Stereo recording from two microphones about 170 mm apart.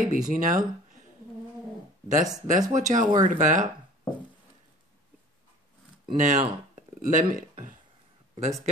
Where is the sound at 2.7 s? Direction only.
50° right (ahead or behind).